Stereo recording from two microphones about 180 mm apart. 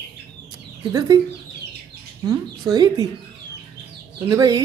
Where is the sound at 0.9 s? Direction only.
25° right (ahead or behind).